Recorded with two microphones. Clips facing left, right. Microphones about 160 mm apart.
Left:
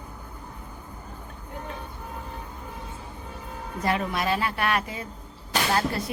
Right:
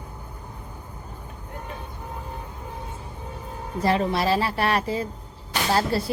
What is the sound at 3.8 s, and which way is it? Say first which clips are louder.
A woman's voice: right 4 dB; 30° right (ahead or behind).